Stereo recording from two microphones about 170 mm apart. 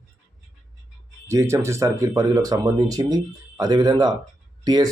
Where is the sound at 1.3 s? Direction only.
15° right (ahead or behind).